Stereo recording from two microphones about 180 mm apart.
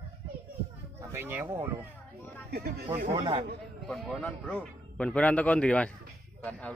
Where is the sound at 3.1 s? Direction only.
25° right (ahead or behind).